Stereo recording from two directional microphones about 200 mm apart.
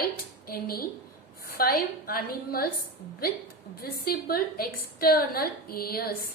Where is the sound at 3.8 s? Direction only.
50° left (ahead or behind).